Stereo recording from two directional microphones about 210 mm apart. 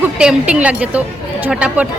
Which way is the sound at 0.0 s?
5° right (ahead or behind).